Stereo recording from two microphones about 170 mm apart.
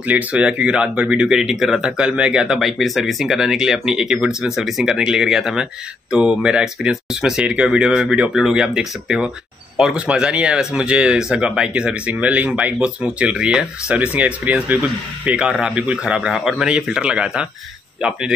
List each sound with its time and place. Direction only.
0.0 s speech: 10° right (ahead or behind)